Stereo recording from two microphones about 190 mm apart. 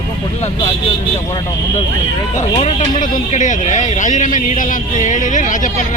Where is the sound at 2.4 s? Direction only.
40° left (ahead or behind).